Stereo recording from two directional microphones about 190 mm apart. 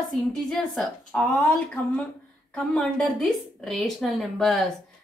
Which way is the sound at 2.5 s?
5° left (ahead or behind).